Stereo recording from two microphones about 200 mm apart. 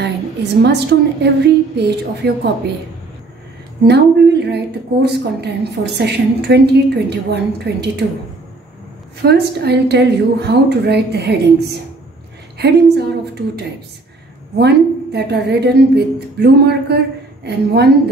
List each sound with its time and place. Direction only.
0.0 s a woman's voice: 55° right (ahead or behind)
3.8 s a woman's voice: 55° right (ahead or behind)
9.2 s a woman's voice: 55° right (ahead or behind)